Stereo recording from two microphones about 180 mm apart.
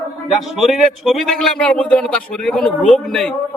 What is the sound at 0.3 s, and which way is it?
A man's voice, centre (ahead or behind).